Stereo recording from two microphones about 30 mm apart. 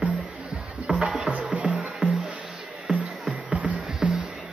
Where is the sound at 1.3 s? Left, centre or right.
Right.